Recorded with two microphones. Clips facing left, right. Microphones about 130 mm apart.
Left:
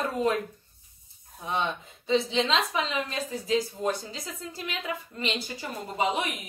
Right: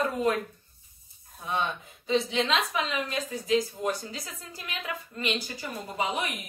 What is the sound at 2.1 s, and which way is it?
A woman's voice, 25° left (ahead or behind).